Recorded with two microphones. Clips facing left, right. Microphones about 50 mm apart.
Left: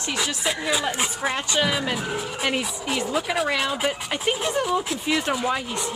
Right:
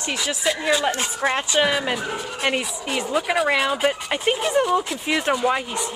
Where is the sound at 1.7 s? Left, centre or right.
Centre.